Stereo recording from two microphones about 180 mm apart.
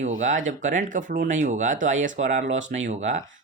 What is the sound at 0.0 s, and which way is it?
Speech, 45° right (ahead or behind).